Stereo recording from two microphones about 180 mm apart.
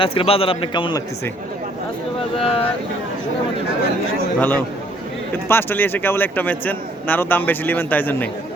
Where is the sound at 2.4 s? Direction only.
30° left (ahead or behind).